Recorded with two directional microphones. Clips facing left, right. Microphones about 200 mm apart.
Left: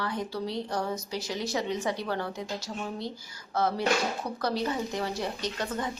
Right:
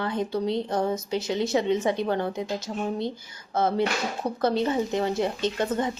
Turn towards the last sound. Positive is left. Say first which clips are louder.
# right 7 dB
turn(degrees=-25)  # may be behind; listen again after turning